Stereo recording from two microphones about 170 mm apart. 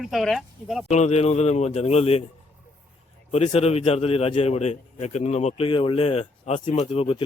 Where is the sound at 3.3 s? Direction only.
40° left (ahead or behind).